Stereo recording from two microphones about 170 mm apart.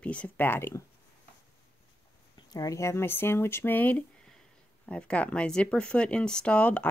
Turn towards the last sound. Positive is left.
turn(degrees=10)  # may be behind; listen again after turning